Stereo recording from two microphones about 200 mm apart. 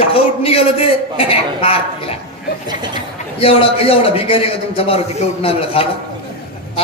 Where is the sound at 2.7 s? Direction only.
20° right (ahead or behind).